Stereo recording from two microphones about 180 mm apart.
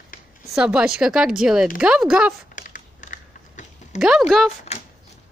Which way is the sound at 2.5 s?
45° left (ahead or behind).